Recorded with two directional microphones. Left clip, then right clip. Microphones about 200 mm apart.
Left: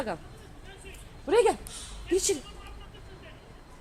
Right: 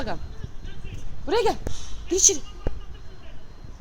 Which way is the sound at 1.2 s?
45° right (ahead or behind).